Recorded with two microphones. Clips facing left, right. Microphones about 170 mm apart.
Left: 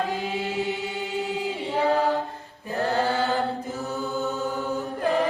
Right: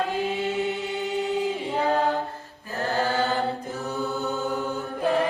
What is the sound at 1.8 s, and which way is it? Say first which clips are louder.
A capella: left 1 dB; 15° left (ahead or behind).